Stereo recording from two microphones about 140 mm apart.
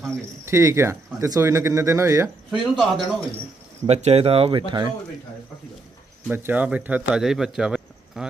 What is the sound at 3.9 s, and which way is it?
Speech, 50° right (ahead or behind).